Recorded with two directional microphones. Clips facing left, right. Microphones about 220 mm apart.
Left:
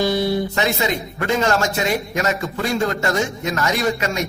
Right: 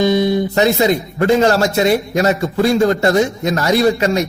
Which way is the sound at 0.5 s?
35° right (ahead or behind).